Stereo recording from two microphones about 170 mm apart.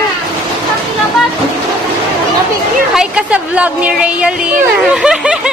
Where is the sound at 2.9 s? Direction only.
5° right (ahead or behind).